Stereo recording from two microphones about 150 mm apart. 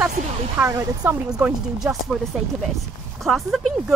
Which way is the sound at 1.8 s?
10° right (ahead or behind).